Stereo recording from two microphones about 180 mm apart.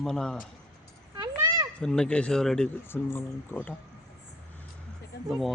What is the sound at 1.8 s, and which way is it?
Speech, 5° left (ahead or behind).